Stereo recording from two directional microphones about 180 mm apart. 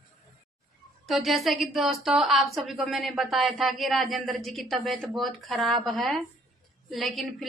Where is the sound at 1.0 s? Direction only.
Centre (ahead or behind).